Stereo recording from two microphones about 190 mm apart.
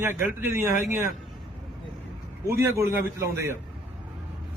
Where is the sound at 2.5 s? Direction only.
15° right (ahead or behind).